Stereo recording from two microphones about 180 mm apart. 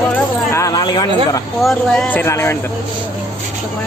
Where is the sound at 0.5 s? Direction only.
20° left (ahead or behind).